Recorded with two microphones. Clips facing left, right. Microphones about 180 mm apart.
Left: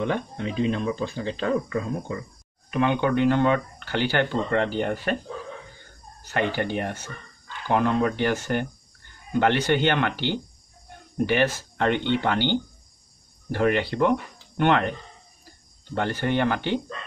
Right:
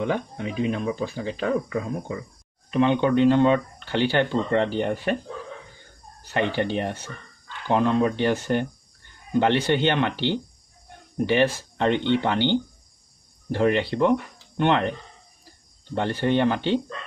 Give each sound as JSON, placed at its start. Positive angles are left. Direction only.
{"t": 0.0, "sound": "speech", "side_deg": -10}
{"t": 2.7, "sound": "speech", "side_deg": -25}
{"t": 6.5, "sound": "speech", "side_deg": -25}
{"t": 15.9, "sound": "speech", "side_deg": -25}